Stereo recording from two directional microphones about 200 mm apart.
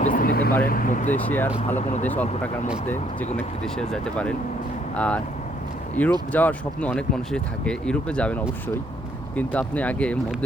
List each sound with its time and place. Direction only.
0.0 s vehicle: 45° left (ahead or behind)
0.6 s speech: 45° left (ahead or behind)
1.1 s speech: 10° left (ahead or behind)
1.7 s speech: 35° left (ahead or behind)
3.3 s speech: 5° left (ahead or behind)